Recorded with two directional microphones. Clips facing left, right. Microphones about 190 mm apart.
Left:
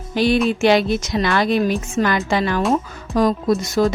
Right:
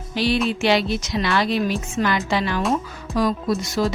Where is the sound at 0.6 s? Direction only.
50° left (ahead or behind).